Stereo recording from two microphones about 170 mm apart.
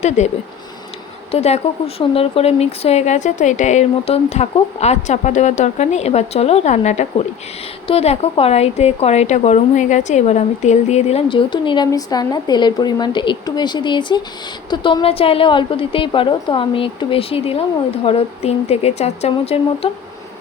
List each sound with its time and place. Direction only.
0.2 s a woman's voice: 40° left (ahead or behind)